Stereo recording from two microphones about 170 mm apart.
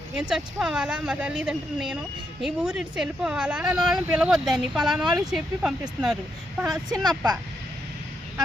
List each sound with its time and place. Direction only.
0.2 s speech: 5° right (ahead or behind)
6.9 s speech: 20° right (ahead or behind)